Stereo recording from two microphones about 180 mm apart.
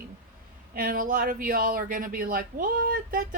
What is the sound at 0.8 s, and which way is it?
Speech, 50° right (ahead or behind).